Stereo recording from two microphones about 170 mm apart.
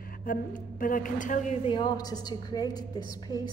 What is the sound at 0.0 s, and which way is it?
A woman's voice, 55° left (ahead or behind).